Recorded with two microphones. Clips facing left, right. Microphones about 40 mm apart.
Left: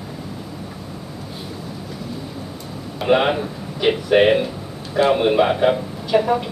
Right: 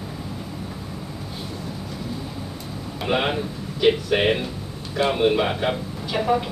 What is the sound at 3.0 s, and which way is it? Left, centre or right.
A man's voice, centre.